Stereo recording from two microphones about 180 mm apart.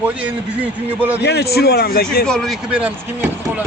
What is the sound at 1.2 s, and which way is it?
A man's voice, 65° left (ahead or behind).